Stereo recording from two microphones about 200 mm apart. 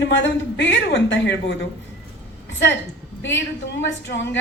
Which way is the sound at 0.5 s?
60° left (ahead or behind).